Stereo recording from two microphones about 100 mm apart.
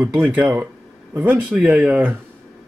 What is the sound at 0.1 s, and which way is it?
Speech, 10° right (ahead or behind).